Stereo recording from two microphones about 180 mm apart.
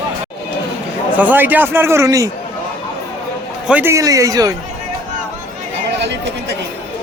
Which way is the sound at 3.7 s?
10° right (ahead or behind).